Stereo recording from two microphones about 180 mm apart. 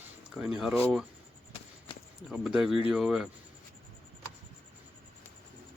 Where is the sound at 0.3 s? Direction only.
5° right (ahead or behind).